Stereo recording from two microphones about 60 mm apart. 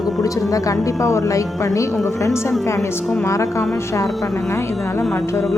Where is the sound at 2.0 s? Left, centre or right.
Left.